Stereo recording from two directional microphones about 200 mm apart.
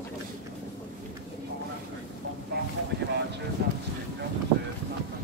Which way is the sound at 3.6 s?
55° right (ahead or behind).